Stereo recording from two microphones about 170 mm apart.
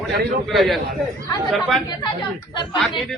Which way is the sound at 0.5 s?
Centre (ahead or behind).